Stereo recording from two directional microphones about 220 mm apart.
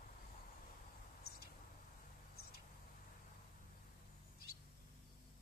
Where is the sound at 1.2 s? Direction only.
45° left (ahead or behind).